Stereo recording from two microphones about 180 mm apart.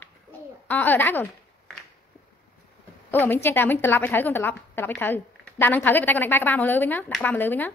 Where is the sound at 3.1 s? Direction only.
10° left (ahead or behind).